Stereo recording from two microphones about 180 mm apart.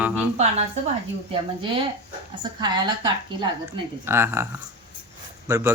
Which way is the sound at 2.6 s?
20° right (ahead or behind).